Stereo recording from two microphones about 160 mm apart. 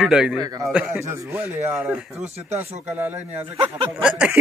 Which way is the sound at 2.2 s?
45° right (ahead or behind).